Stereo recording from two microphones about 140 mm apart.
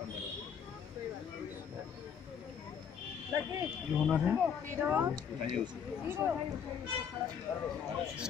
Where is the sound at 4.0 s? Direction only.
Centre (ahead or behind).